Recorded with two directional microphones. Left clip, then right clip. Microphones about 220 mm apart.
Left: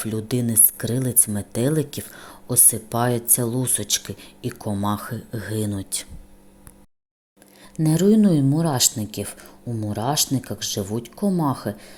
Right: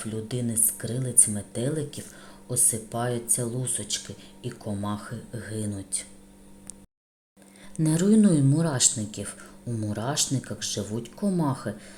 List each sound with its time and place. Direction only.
0.0 s speech: 30° left (ahead or behind)
7.9 s speech: 15° left (ahead or behind)